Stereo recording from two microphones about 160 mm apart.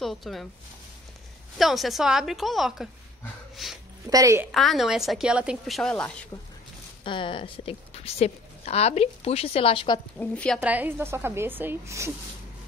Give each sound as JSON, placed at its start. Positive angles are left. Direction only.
{"t": 0.0, "sound": "a woman's voice", "side_deg": 0}
{"t": 1.6, "sound": "a woman's voice", "side_deg": 0}
{"t": 4.1, "sound": "a woman's voice", "side_deg": -20}
{"t": 4.5, "sound": "a woman's voice", "side_deg": 0}
{"t": 7.1, "sound": "a woman's voice", "side_deg": 30}
{"t": 10.1, "sound": "a woman's voice", "side_deg": 10}
{"t": 10.6, "sound": "a woman's voice", "side_deg": -10}